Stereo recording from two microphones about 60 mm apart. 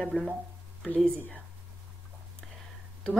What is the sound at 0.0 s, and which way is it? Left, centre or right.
Speech, centre.